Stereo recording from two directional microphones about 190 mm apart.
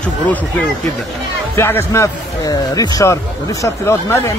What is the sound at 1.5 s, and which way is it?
Speech, 15° left (ahead or behind).